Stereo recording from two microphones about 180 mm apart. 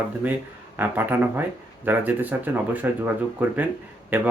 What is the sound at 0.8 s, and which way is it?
Speech, 10° right (ahead or behind).